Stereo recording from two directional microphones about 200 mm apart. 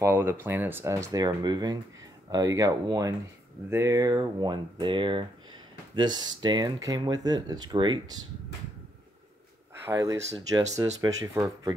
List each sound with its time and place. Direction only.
0.0 s speech: 10° right (ahead or behind)
9.8 s speech: 15° right (ahead or behind)